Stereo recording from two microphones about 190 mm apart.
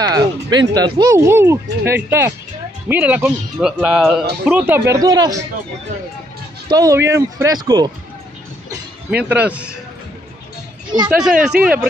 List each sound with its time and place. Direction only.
0.0 s speech: 20° right (ahead or behind)
6.7 s speech: 15° right (ahead or behind)
9.1 s speech: 10° right (ahead or behind)
11.1 s speech: 5° right (ahead or behind)